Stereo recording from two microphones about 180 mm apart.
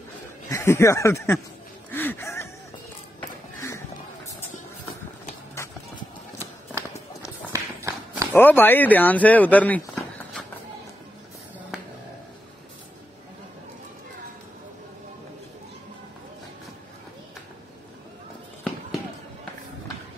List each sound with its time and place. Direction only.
0.5 s speech: 15° left (ahead or behind)
1.9 s music: 10° left (ahead or behind)
3.2 s a sound: 15° left (ahead or behind)
7.5 s run: 15° right (ahead or behind)
8.3 s speech: 10° left (ahead or behind)